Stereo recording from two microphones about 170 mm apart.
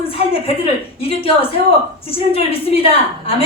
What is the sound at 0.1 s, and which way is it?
A woman's voice, 35° left (ahead or behind).